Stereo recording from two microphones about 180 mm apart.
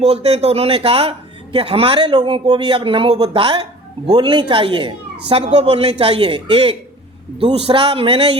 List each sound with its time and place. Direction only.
0.0 s speech: 35° right (ahead or behind)